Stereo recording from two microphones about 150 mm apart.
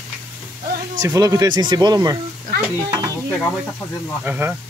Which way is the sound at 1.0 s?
20° right (ahead or behind).